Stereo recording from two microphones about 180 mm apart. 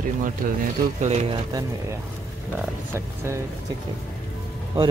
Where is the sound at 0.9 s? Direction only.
40° right (ahead or behind).